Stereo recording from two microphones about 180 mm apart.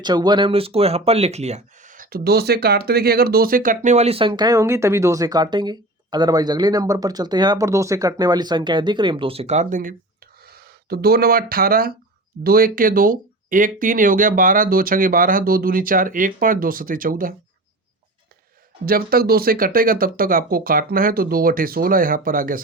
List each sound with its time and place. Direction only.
0.0 s speech: 25° right (ahead or behind); by 9.9 s 45° right (ahead or behind)
10.5 s speech: 60° right (ahead or behind)
18.9 s speech: 55° right (ahead or behind)